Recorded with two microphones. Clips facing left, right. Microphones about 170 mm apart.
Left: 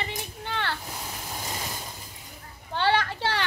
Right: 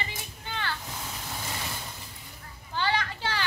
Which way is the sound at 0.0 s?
65° left (ahead or behind).